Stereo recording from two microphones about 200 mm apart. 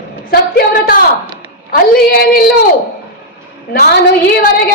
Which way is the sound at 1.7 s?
50° left (ahead or behind).